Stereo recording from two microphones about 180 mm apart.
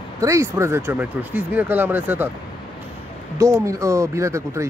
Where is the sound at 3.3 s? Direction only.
15° right (ahead or behind).